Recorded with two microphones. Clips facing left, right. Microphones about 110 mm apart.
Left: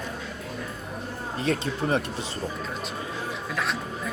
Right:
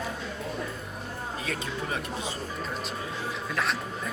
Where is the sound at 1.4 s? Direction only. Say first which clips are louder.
Left 9 dB; 35° left (ahead or behind).